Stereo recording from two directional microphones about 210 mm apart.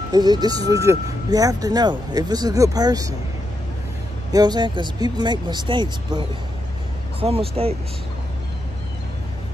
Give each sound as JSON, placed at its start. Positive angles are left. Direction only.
{"t": 0.1, "sound": "speech", "side_deg": -20}
{"t": 4.3, "sound": "speech", "side_deg": -20}